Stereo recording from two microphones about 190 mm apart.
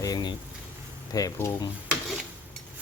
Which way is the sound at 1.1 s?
15° left (ahead or behind).